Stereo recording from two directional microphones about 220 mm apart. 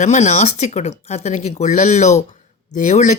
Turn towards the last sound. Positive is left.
turn(degrees=35)  # may be behind; listen again after turning